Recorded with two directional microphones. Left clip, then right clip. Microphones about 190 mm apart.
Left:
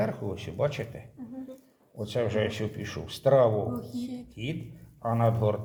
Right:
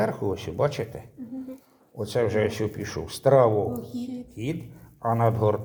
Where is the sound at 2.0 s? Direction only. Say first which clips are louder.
Right 4 dB; 35° right (ahead or behind).